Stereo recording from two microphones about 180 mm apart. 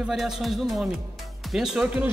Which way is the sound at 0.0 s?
Centre (ahead or behind).